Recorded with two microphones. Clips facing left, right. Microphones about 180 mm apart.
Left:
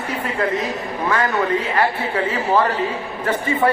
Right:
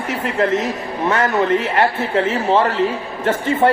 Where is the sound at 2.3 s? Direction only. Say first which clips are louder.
Right 1 dB; 25° right (ahead or behind).